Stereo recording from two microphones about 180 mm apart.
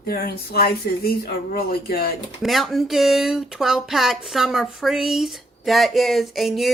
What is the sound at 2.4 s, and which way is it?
Speech, centre (ahead or behind).